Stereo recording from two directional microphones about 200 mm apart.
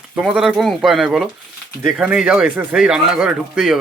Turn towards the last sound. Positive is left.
turn(degrees=0)  # may be behind; listen again after turning